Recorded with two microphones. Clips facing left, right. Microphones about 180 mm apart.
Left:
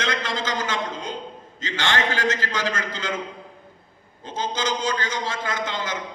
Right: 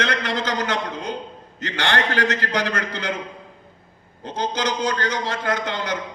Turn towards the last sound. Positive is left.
turn(degrees=-65)  # may be behind; listen again after turning